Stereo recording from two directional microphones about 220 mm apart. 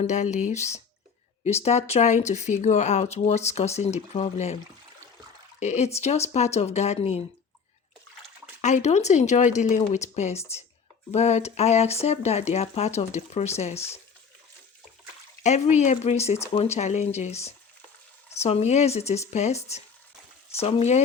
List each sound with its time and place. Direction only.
0.0 s speech: 30° left (ahead or behind)
5.5 s speech: 30° left (ahead or behind)
8.6 s speech: 30° left (ahead or behind)
15.4 s speech: 30° left (ahead or behind)